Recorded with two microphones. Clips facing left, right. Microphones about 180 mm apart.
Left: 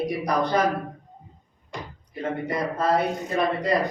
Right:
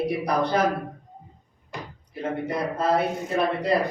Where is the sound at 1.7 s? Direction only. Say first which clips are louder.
Even; 5° right (ahead or behind).